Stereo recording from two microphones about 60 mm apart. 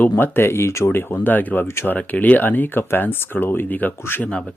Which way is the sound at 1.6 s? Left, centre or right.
Left.